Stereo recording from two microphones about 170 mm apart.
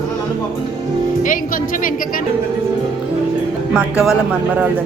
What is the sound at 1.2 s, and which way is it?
Speech, 55° left (ahead or behind).